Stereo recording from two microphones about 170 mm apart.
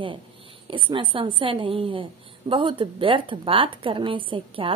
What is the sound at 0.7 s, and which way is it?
A woman's voice, 30° right (ahead or behind).